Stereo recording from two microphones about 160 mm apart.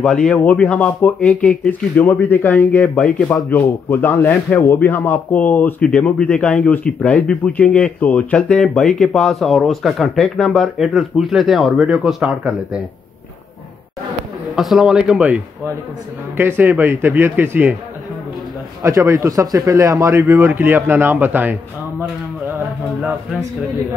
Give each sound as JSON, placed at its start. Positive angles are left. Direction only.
{"t": 0.0, "sound": "speech", "side_deg": 5}
{"t": 14.5, "sound": "speech", "side_deg": 0}
{"t": 18.8, "sound": "speech", "side_deg": -20}